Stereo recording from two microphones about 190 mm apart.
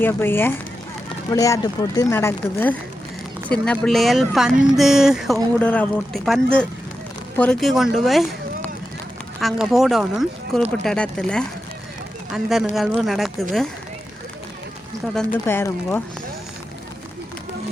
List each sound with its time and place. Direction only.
0.0 s speech: 10° left (ahead or behind)
15.1 s speech: 5° left (ahead or behind)